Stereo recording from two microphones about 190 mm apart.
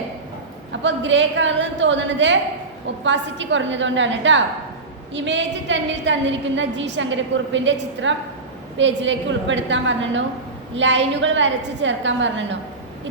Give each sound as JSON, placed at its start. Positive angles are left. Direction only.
{"t": 0.7, "sound": "a woman's voice", "side_deg": -75}